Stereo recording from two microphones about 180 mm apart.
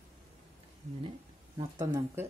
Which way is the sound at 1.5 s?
20° right (ahead or behind).